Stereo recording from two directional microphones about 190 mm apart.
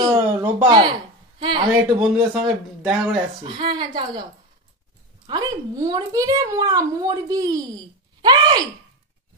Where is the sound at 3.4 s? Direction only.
25° right (ahead or behind).